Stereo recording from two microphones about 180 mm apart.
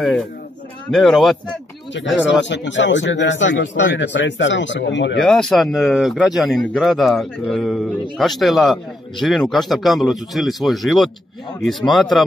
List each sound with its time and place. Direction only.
0.0 s speech: 5° left (ahead or behind)
2.0 s a man's voice: 90° left
5.2 s speech: centre (ahead or behind)